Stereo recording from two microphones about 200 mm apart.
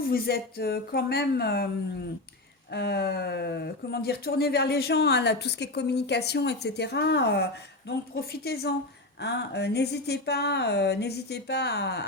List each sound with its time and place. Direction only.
0.0 s speech: 50° left (ahead or behind)
2.7 s speech: 55° left (ahead or behind)